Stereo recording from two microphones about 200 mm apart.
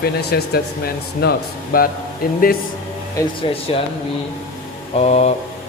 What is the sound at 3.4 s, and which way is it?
Speech, 25° left (ahead or behind).